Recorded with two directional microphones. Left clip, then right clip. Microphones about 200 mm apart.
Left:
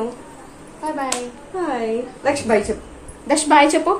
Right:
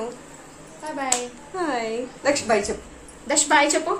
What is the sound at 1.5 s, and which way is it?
Speech, 20° right (ahead or behind).